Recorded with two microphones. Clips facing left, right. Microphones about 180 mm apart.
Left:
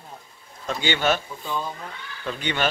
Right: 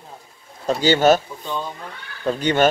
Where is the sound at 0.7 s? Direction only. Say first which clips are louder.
Right 8 dB; 40° right (ahead or behind).